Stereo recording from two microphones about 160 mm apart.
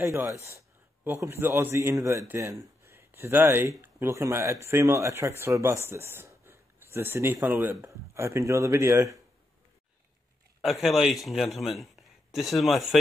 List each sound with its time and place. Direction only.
1.0 s speech: 15° right (ahead or behind)
10.6 s a man's voice: centre (ahead or behind)